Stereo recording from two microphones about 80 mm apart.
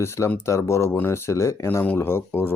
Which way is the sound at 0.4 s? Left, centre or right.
Left.